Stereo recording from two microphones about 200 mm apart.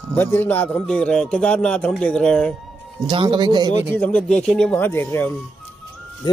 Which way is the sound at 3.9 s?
10° left (ahead or behind).